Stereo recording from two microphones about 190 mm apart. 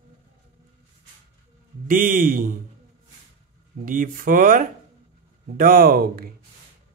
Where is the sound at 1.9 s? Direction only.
45° right (ahead or behind).